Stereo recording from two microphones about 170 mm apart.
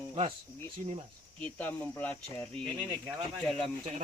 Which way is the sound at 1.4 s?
10° left (ahead or behind).